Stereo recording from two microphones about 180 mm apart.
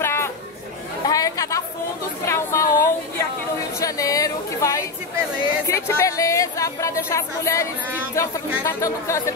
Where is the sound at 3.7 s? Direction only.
20° left (ahead or behind).